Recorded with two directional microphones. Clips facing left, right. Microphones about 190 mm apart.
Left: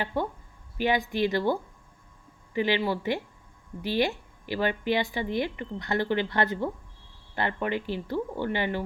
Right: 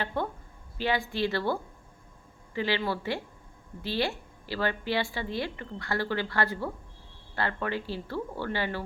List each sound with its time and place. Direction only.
0.0 s speech: 15° left (ahead or behind)